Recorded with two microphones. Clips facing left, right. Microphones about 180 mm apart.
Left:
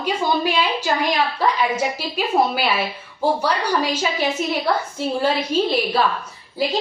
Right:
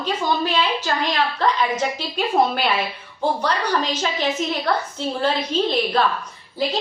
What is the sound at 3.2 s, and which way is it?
A woman's voice, 10° left (ahead or behind).